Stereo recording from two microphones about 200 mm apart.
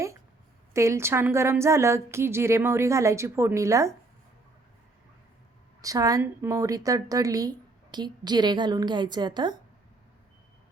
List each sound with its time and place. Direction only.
0.7 s a woman's voice: 15° right (ahead or behind)
5.8 s a woman's voice: 15° right (ahead or behind)